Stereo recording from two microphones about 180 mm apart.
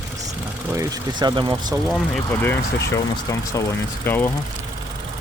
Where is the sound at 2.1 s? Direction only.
10° left (ahead or behind).